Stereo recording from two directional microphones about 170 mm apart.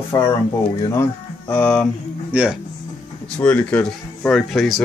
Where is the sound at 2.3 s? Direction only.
5° right (ahead or behind).